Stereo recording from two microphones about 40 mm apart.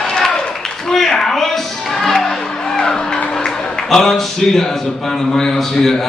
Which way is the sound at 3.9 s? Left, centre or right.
Centre.